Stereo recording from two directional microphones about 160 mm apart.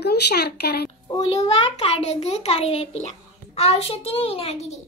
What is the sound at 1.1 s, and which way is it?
A child's voice, 40° left (ahead or behind).